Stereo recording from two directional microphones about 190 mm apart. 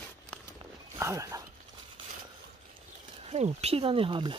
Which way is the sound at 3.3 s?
35° right (ahead or behind).